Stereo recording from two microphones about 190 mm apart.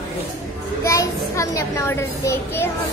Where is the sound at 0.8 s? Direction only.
15° left (ahead or behind).